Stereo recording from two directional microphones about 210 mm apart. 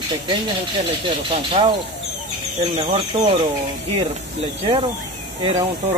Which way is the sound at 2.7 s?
25° right (ahead or behind).